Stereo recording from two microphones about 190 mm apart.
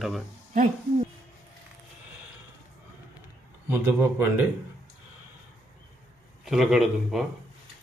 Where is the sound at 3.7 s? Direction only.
10° right (ahead or behind).